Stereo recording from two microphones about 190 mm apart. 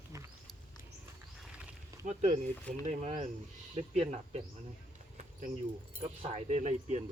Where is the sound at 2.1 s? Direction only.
35° right (ahead or behind).